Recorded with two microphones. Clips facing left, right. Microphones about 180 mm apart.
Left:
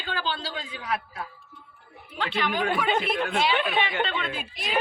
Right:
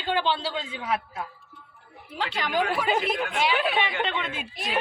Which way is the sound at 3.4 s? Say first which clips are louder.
Even; 10° right (ahead or behind).